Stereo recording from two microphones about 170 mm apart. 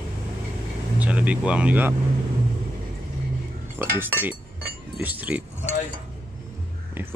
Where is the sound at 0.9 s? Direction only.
10° right (ahead or behind).